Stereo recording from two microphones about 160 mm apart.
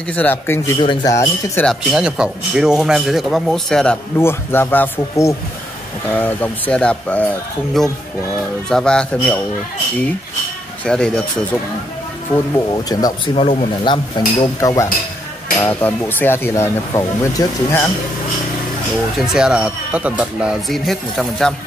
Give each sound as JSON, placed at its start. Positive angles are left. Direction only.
{"t": 0.1, "sound": "speech", "side_deg": 10}
{"t": 0.7, "sound": "speech", "side_deg": 30}
{"t": 1.1, "sound": "speech", "side_deg": 15}
{"t": 1.7, "sound": "speech", "side_deg": -5}
{"t": 8.6, "sound": "speech", "side_deg": 5}
{"t": 10.9, "sound": "speech", "side_deg": 5}
{"t": 12.5, "sound": "speech", "side_deg": 25}
{"t": 13.3, "sound": "speech", "side_deg": 40}
{"t": 19.1, "sound": "speech", "side_deg": -5}